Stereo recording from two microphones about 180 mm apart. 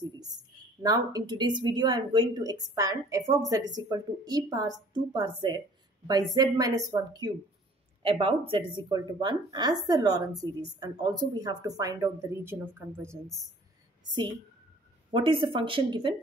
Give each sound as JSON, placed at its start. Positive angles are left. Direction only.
{"t": 0.0, "sound": "a woman's voice", "side_deg": -20}
{"t": 15.0, "sound": "speech", "side_deg": -30}